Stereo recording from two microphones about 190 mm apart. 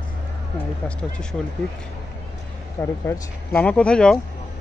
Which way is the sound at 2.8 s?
10° left (ahead or behind).